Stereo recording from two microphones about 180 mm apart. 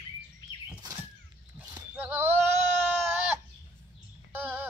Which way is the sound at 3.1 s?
10° right (ahead or behind).